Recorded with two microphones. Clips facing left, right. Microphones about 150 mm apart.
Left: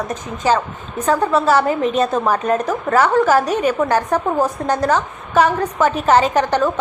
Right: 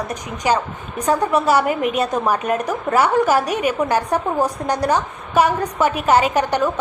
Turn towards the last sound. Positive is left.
turn(degrees=-10)  # may be behind; listen again after turning